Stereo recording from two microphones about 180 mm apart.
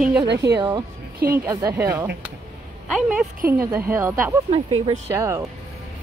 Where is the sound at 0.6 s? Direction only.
25° right (ahead or behind).